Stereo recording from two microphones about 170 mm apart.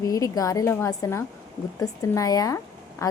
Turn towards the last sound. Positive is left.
turn(degrees=20)  # may be behind; listen again after turning